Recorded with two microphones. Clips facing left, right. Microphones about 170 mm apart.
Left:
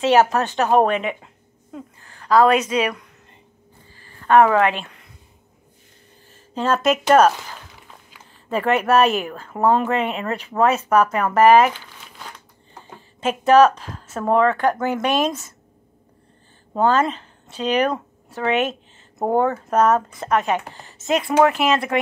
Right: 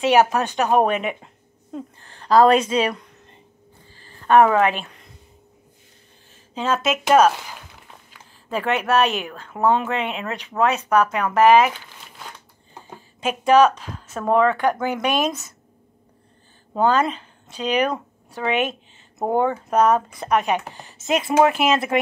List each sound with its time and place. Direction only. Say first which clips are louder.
0.0 s speech: left 1 dB; 15° right (ahead or behind)
2.0 s a woman's voice: right 1 dB; 30° right (ahead or behind)
4.3 s speech: even; 15° right (ahead or behind)
6.5 s speech: left 3 dB; 5° right (ahead or behind)
8.5 s speech: left 3 dB; centre (ahead or behind)
13.2 s speech: left 2 dB; 10° right (ahead or behind)
14.0 s a sound: left 1 dB; 5° left (ahead or behind)
14.3 s speech: even; 10° right (ahead or behind)
16.8 s a woman's voice: left 1 dB; 10° right (ahead or behind)